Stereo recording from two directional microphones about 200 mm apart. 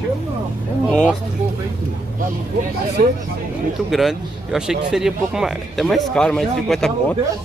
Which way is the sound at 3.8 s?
Centre (ahead or behind).